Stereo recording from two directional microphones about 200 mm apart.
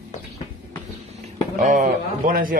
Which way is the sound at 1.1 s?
40° right (ahead or behind).